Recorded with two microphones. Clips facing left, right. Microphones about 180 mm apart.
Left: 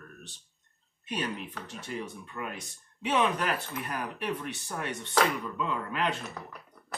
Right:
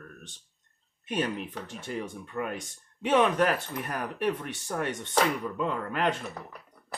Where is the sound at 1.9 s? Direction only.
45° right (ahead or behind).